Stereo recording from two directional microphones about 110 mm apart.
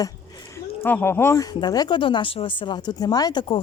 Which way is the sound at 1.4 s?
35° left (ahead or behind).